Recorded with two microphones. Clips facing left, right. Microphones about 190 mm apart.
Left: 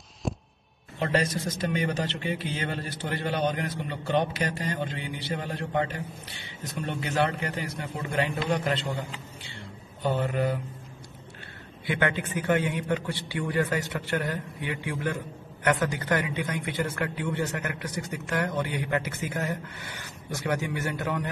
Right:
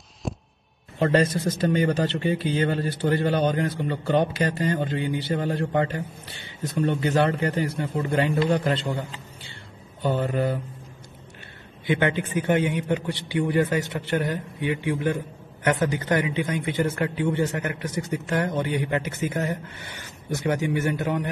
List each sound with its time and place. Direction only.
0.2 s music: centre (ahead or behind)
0.9 s a man's voice: 35° right (ahead or behind)
4.0 s a man's voice: 40° right (ahead or behind)
10.1 s a man's voice: 35° right (ahead or behind)
11.8 s a man's voice: 20° right (ahead or behind)